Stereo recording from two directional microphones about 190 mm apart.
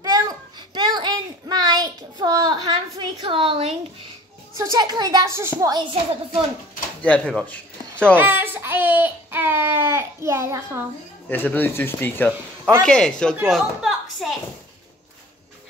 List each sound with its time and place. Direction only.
0.0 s a sound: 20° right (ahead or behind)
4.6 s a child's voice: 20° right (ahead or behind)
7.0 s speech: 5° left (ahead or behind)
8.2 s baby cry: 10° right (ahead or behind)
11.2 s speech: 10° left (ahead or behind)
13.5 s a sound: centre (ahead or behind)